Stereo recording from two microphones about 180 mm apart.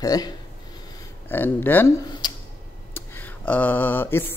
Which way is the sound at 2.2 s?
25° left (ahead or behind).